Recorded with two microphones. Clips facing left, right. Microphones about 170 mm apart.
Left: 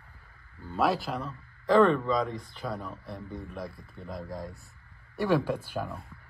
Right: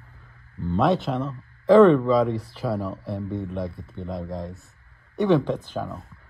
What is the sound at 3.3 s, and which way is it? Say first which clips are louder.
Speech: right 10 dB; 30° right (ahead or behind).